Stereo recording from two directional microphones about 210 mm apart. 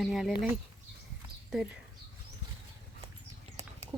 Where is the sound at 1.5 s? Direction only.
Centre (ahead or behind).